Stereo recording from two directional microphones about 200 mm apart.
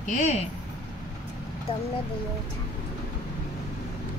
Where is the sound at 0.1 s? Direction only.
35° left (ahead or behind).